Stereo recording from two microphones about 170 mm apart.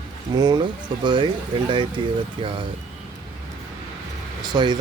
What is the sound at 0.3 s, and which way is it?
Speech, 25° right (ahead or behind).